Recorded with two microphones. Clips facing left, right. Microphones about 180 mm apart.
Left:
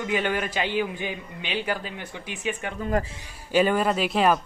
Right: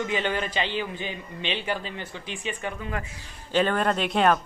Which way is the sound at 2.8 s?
35° left (ahead or behind).